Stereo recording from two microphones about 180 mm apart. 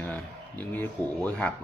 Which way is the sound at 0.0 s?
10° left (ahead or behind).